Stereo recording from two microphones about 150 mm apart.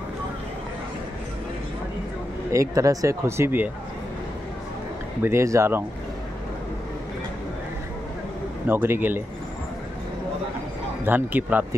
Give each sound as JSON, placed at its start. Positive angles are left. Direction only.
{"t": 2.5, "sound": "speech", "side_deg": -20}
{"t": 5.2, "sound": "speech", "side_deg": -20}
{"t": 8.6, "sound": "speech", "side_deg": -15}
{"t": 11.1, "sound": "speech", "side_deg": -10}